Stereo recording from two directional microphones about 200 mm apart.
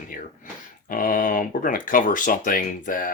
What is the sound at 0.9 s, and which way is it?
Speech, 40° left (ahead or behind).